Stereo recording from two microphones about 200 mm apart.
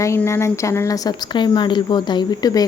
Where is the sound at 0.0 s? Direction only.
15° left (ahead or behind).